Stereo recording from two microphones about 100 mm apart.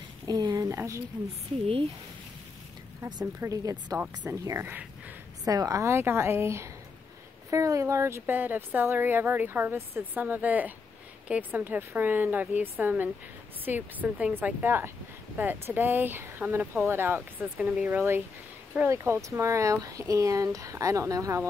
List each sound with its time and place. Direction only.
0.3 s speech: 45° right (ahead or behind)
0.7 s a woman's voice: 30° right (ahead or behind)
3.3 s a woman's voice: 35° right (ahead or behind)
5.4 s a woman's voice: 40° right (ahead or behind)